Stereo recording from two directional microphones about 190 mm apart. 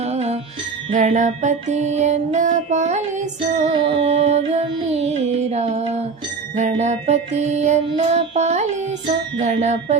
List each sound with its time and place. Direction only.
0.0 s music: 35° right (ahead or behind)